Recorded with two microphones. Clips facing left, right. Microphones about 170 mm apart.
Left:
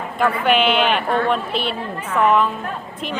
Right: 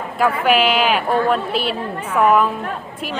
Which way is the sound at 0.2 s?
5° right (ahead or behind).